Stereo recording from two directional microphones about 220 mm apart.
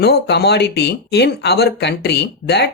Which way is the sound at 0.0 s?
50° left (ahead or behind).